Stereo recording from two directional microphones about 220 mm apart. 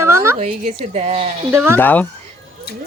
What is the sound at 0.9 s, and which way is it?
Speech, 30° right (ahead or behind).